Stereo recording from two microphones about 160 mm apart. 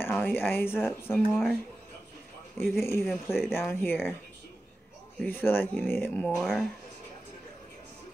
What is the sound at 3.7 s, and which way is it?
Speech, 15° left (ahead or behind).